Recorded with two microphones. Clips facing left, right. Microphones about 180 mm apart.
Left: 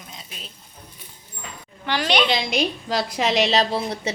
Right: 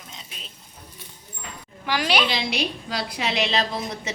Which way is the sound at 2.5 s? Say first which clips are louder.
Left 5 dB; 45° left (ahead or behind).